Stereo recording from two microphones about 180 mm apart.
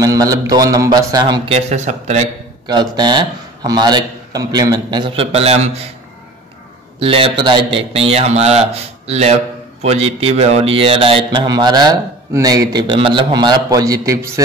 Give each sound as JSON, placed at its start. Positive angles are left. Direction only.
{"t": 0.0, "sound": "a sound", "side_deg": -20}
{"t": 0.5, "sound": "speech", "side_deg": -20}
{"t": 2.6, "sound": "speech", "side_deg": -25}
{"t": 7.0, "sound": "speech", "side_deg": -30}